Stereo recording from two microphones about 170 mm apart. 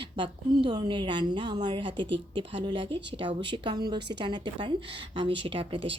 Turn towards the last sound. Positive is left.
turn(degrees=-35)  # may be behind; listen again after turning